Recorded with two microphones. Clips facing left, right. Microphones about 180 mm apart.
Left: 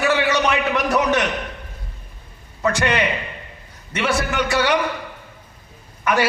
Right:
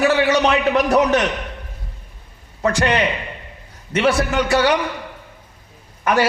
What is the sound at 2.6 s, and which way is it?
Speech, 35° right (ahead or behind).